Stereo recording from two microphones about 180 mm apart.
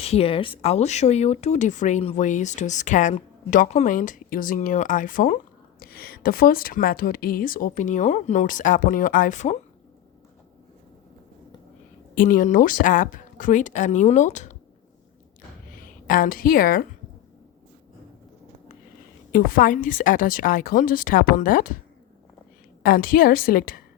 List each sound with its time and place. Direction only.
0.0 s speech: 35° left (ahead or behind)
12.1 s speech: 50° left (ahead or behind)
15.7 s a woman's voice: 50° left (ahead or behind)
19.3 s speech: 50° left (ahead or behind)
22.8 s speech: 55° left (ahead or behind)